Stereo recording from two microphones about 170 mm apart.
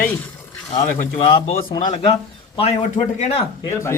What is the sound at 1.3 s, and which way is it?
Speech, 25° left (ahead or behind).